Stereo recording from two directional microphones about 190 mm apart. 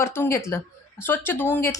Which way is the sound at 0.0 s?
15° left (ahead or behind).